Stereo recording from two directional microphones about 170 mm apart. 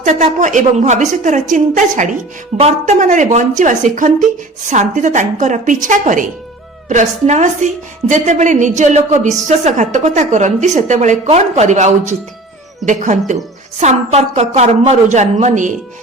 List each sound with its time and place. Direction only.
0.0 s a woman's voice: 45° right (ahead or behind)